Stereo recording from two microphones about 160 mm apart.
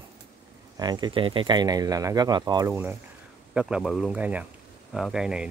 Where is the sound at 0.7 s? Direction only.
25° right (ahead or behind).